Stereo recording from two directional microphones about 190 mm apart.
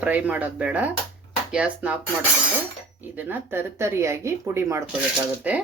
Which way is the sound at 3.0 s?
10° right (ahead or behind).